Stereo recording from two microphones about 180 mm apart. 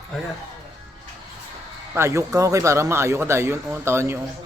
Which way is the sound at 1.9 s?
15° right (ahead or behind).